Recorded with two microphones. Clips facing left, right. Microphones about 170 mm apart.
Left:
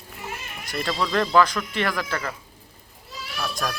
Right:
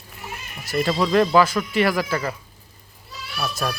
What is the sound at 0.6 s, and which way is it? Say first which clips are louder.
Speech: right 6 dB; 5° right (ahead or behind).